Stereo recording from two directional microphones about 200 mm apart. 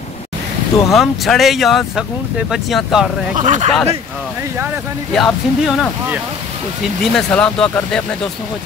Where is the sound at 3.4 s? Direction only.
40° right (ahead or behind).